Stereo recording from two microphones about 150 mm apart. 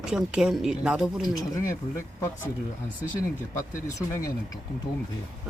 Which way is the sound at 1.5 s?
20° left (ahead or behind).